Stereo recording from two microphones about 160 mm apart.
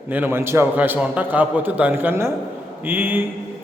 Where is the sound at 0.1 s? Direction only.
15° right (ahead or behind).